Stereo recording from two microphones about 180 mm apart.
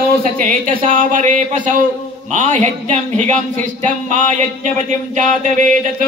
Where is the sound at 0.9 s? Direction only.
45° right (ahead or behind).